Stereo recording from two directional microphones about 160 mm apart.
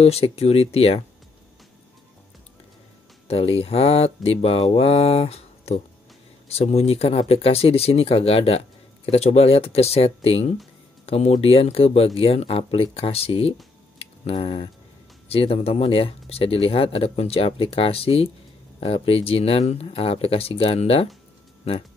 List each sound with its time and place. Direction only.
0.0 s speech: 40° left (ahead or behind)
3.3 s speech: 40° left (ahead or behind)
13.9 s a sound: 40° left (ahead or behind)
15.2 s speech: 35° left (ahead or behind)